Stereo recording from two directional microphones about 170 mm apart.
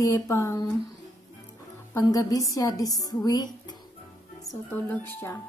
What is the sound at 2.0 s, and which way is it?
A woman's voice, 20° left (ahead or behind).